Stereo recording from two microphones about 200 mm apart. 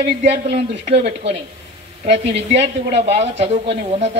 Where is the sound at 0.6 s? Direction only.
40° right (ahead or behind).